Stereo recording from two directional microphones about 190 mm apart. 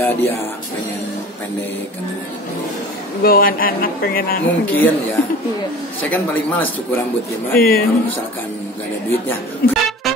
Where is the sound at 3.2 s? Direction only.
50° left (ahead or behind).